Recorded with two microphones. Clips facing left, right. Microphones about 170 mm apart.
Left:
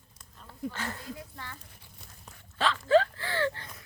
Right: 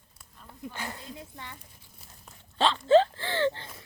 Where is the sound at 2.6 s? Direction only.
25° right (ahead or behind).